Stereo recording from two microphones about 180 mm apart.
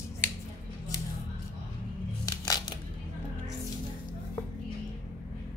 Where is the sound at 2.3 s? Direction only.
20° left (ahead or behind).